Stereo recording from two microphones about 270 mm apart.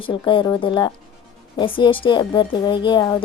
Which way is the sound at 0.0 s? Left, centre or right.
Centre.